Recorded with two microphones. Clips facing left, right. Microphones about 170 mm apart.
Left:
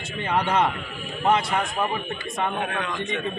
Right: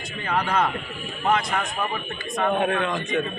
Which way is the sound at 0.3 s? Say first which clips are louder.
Left 1 dB; 25° left (ahead or behind).